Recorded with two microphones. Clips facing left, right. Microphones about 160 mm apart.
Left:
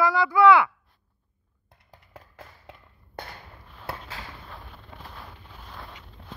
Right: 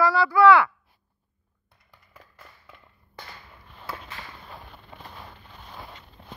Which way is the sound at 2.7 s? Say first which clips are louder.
Left 4 dB; 85° left.